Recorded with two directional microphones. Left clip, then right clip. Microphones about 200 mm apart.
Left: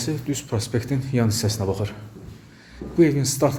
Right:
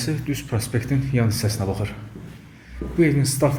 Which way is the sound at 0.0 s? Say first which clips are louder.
Even; 10° left (ahead or behind).